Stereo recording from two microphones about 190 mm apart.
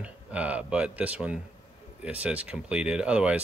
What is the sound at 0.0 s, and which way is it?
Speech, 5° right (ahead or behind).